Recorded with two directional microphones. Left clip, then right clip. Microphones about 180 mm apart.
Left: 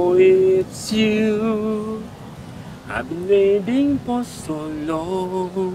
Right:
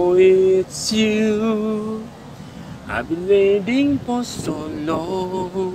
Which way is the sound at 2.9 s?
30° right (ahead or behind).